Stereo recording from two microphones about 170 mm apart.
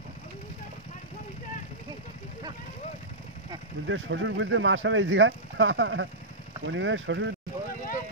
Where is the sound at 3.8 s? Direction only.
90° right.